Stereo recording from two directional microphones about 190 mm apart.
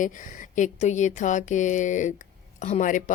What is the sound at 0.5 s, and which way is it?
A woman's voice, 40° left (ahead or behind).